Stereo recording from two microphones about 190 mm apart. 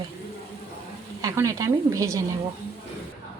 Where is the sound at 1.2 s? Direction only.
15° right (ahead or behind).